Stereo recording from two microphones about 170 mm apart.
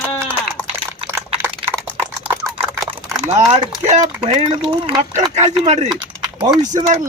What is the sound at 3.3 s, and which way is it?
A man's voice, 40° right (ahead or behind).